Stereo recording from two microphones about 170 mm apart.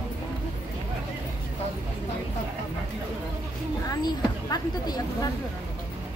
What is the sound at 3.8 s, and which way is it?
Speech, 25° left (ahead or behind).